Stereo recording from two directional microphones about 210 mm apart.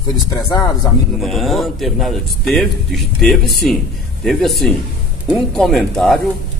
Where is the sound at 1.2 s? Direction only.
Centre (ahead or behind).